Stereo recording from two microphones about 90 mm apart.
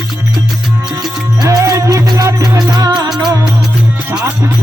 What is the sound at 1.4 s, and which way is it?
Music, 35° right (ahead or behind).